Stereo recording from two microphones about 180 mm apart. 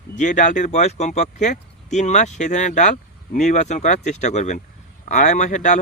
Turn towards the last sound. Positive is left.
turn(degrees=40)  # may be behind; listen again after turning